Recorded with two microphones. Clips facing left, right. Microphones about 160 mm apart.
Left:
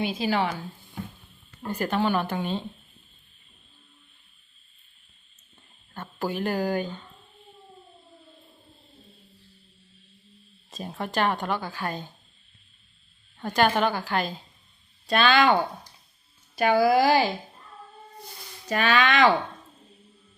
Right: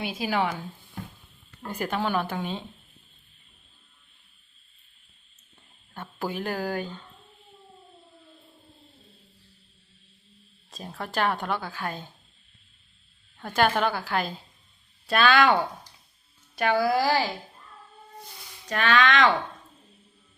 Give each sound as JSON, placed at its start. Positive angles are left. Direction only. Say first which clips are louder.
{"t": 0.0, "sound": "speech", "louder": "left 2 dB", "side_deg": -10}
{"t": 1.6, "sound": "speech", "louder": "left 3 dB", "side_deg": -10}
{"t": 5.9, "sound": "speech", "louder": "left 2 dB", "side_deg": -10}
{"t": 6.5, "sound": "a woman's voice", "louder": "left 4 dB", "side_deg": 10}
{"t": 10.7, "sound": "a woman's voice", "louder": "left 3 dB", "side_deg": 0}
{"t": 13.5, "sound": "a woman's voice", "louder": "left 1 dB", "side_deg": -5}
{"t": 16.6, "sound": "a woman's voice", "louder": "left 3 dB", "side_deg": 10}
{"t": 18.7, "sound": "a woman's voice", "louder": "even", "side_deg": 5}